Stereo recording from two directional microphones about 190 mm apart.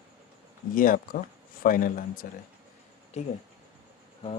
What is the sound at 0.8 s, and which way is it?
A man's voice, 45° left (ahead or behind).